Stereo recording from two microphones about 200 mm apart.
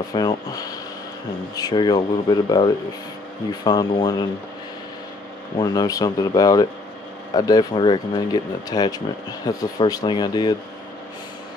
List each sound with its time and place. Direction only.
0.1 s speech: 20° left (ahead or behind)
5.6 s speech: 20° left (ahead or behind)